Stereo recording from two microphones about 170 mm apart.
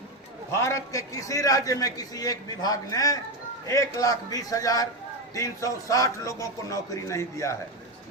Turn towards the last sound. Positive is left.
turn(degrees=15)  # may be behind; listen again after turning